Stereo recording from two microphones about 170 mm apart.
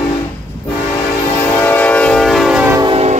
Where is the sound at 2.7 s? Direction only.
30° right (ahead or behind).